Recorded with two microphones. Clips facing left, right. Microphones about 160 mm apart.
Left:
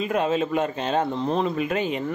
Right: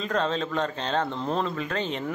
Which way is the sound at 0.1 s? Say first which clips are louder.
Left 3 dB; 10° left (ahead or behind).